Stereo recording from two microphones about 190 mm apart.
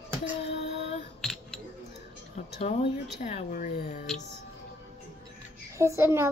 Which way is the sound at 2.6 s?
35° left (ahead or behind).